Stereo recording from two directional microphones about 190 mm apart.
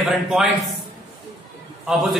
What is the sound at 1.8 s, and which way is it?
Speech, centre (ahead or behind).